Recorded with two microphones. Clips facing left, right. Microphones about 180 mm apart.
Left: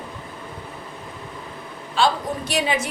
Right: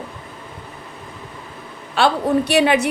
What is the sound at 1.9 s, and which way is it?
Speech, 65° right (ahead or behind).